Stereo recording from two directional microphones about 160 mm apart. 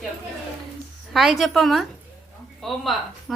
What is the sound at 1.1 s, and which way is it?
Speech, centre (ahead or behind).